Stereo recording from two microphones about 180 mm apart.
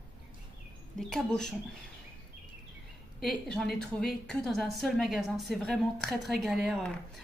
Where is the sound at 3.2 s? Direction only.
5° left (ahead or behind).